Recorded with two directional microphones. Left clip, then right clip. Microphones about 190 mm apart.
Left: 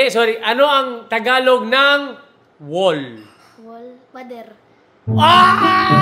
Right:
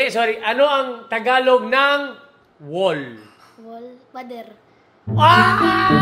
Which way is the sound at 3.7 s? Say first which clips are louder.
Right 1 dB; centre (ahead or behind).